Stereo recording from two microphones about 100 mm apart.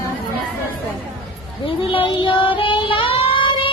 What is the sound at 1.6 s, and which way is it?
Child singing, 65° left (ahead or behind).